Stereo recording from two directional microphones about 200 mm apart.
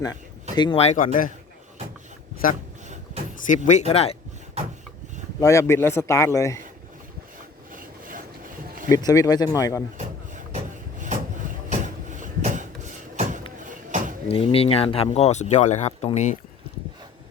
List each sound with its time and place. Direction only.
0.5 s speech: 25° left (ahead or behind); by 1.3 s 40° left (ahead or behind)
3.4 s speech: 40° left (ahead or behind)
5.4 s a man's voice: 15° left (ahead or behind)
7.7 s a sound: 45° right (ahead or behind)
8.9 s a man's voice: 15° left (ahead or behind)
10.0 s vehicle: 40° right (ahead or behind)
11.7 s a sound: 40° right (ahead or behind)
14.3 s speech: 30° left (ahead or behind)